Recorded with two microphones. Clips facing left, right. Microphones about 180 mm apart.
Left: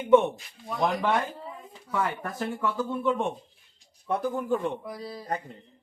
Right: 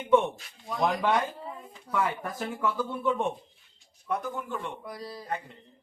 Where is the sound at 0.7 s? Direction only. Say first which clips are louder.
Even; centre (ahead or behind).